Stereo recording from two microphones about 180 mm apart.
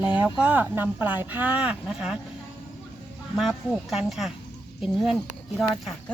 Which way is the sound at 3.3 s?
Centre (ahead or behind).